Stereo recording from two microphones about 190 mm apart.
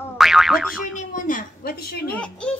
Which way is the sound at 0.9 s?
45° left (ahead or behind).